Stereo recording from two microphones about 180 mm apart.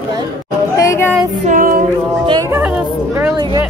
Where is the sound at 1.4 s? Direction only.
50° right (ahead or behind).